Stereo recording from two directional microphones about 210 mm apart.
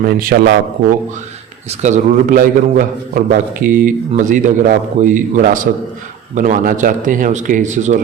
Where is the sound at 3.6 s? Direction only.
40° right (ahead or behind).